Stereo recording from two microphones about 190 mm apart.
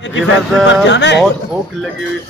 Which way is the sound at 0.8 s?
70° left (ahead or behind).